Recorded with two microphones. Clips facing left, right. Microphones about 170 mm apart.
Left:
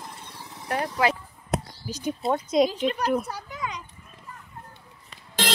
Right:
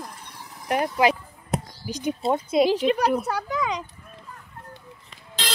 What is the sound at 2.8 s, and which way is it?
Speech, 75° right (ahead or behind).